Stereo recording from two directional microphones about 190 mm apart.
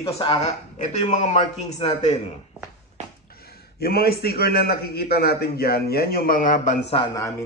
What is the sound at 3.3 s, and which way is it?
A man's voice, 55° left (ahead or behind).